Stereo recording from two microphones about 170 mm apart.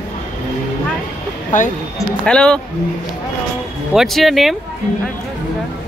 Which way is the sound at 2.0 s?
5° left (ahead or behind).